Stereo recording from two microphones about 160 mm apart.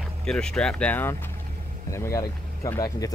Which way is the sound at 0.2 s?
5° left (ahead or behind).